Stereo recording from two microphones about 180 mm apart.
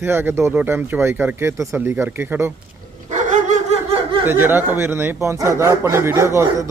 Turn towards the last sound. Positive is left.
turn(degrees=-15)  # may be behind; listen again after turning